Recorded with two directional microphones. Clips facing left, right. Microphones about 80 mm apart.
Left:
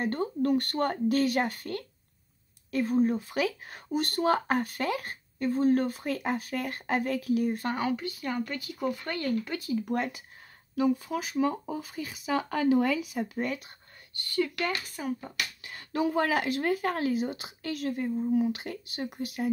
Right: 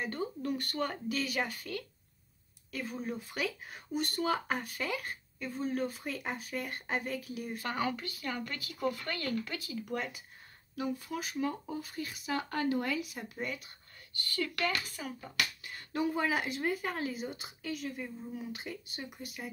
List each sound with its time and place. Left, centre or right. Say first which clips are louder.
0.0 s speech: left 8 dB; left
3.3 s speech: left 7 dB; left
7.7 s speech: left 4 dB; centre
9.7 s speech: left 8 dB; left
11.1 s speech: left 7 dB; left
12.7 s speech: left 8 dB; left
14.2 s speech: left 5 dB; left
15.6 s speech: left 8 dB; left